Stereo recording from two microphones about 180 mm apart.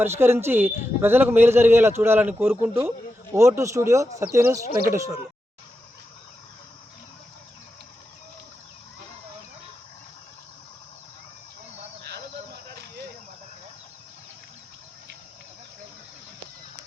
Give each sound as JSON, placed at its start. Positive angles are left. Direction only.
{"t": 0.0, "sound": "a man's voice", "side_deg": -15}
{"t": 12.7, "sound": "cricket", "side_deg": -65}